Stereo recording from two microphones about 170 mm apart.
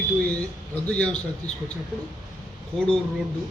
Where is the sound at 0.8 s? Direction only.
5° left (ahead or behind).